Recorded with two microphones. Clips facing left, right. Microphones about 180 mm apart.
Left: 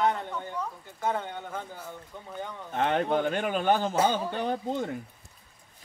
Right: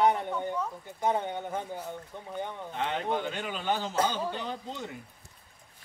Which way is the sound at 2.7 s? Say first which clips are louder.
Left 6 dB; 50° left (ahead or behind).